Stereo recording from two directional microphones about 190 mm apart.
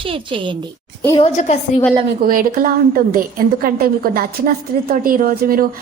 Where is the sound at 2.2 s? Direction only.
45° right (ahead or behind).